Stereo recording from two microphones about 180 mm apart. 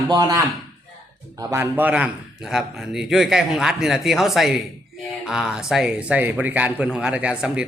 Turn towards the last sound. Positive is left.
turn(degrees=-5)  # may be behind; listen again after turning